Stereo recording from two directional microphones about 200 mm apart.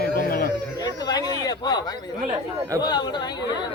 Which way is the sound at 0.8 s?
20° left (ahead or behind).